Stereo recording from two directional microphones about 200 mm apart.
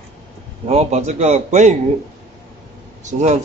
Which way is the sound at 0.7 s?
35° right (ahead or behind).